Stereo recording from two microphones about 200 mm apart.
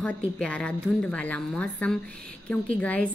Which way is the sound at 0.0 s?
5° left (ahead or behind).